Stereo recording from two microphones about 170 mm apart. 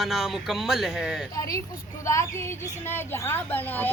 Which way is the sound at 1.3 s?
20° left (ahead or behind).